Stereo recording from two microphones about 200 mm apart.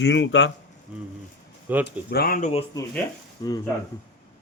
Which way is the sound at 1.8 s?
55° left (ahead or behind).